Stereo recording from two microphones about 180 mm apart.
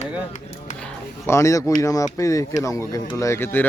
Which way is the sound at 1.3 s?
15° left (ahead or behind).